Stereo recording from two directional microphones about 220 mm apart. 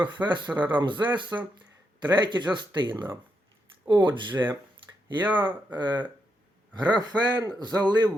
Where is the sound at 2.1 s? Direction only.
20° right (ahead or behind).